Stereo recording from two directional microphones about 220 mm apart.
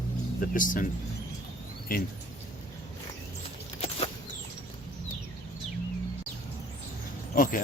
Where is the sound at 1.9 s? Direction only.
40° left (ahead or behind).